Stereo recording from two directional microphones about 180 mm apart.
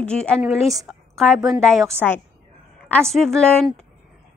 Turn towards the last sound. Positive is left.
turn(degrees=5)  # may be behind; listen again after turning